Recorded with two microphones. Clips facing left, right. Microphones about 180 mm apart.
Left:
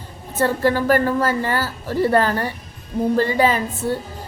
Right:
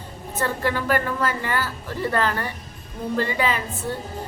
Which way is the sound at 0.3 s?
40° left (ahead or behind).